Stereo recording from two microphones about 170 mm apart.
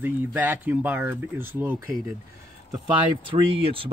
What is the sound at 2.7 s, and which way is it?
Speech, 30° right (ahead or behind).